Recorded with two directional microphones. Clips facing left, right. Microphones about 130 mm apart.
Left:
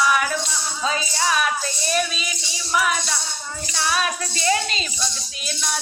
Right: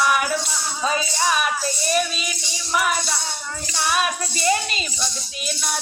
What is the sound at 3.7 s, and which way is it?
Speech, 10° right (ahead or behind).